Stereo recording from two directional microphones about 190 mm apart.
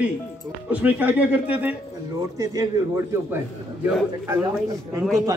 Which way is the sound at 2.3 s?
20° right (ahead or behind).